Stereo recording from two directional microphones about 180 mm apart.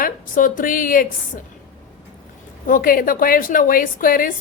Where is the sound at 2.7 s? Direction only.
50° left (ahead or behind).